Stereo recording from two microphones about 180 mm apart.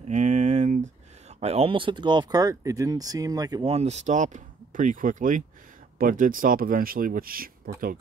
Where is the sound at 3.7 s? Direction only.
35° right (ahead or behind).